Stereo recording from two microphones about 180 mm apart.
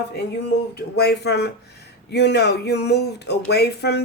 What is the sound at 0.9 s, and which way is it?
Speech, 65° left (ahead or behind).